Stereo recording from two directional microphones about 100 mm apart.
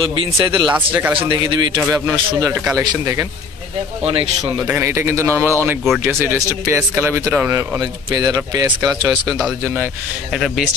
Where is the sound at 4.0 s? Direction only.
70° right (ahead or behind).